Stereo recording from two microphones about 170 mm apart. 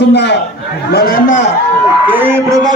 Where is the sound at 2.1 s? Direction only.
10° right (ahead or behind).